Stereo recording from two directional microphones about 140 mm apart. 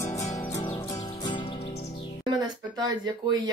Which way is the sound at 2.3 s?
30° right (ahead or behind).